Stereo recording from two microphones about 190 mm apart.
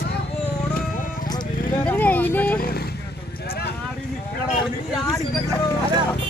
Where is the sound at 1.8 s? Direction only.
10° left (ahead or behind).